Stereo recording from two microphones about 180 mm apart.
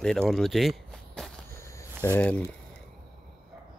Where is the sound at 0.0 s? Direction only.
5° left (ahead or behind).